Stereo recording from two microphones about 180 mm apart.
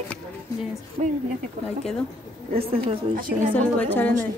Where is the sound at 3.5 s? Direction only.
10° left (ahead or behind).